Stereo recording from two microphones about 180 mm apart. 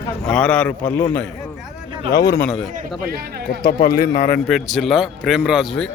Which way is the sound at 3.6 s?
55° left (ahead or behind).